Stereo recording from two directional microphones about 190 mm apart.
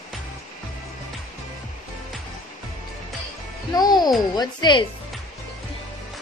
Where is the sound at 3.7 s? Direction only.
20° left (ahead or behind).